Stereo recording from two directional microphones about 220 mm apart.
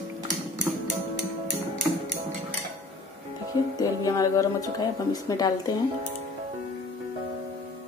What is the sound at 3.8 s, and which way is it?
Speech, 15° left (ahead or behind).